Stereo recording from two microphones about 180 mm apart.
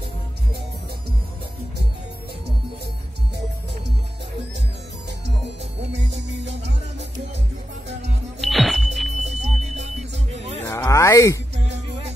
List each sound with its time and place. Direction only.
6.1 s music: 80° right
8.4 s music: centre (ahead or behind)
9.1 s chirp tone: 40° right (ahead or behind)
10.3 s music: 35° right (ahead or behind)
10.6 s a sound: 10° left (ahead or behind)